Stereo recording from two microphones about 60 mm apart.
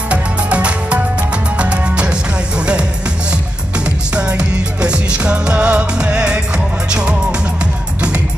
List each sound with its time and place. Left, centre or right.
0.1 s music: right